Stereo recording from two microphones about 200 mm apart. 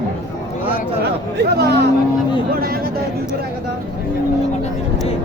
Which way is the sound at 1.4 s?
55° right (ahead or behind).